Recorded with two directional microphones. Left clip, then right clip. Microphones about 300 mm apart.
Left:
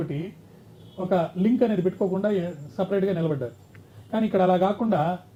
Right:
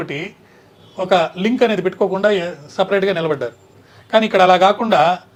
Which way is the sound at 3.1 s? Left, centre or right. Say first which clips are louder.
Right 9 dB; centre.